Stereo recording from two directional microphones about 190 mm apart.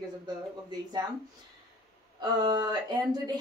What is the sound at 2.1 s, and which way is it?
Speech, 20° right (ahead or behind).